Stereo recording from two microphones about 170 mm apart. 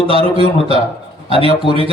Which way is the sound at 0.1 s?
35° right (ahead or behind).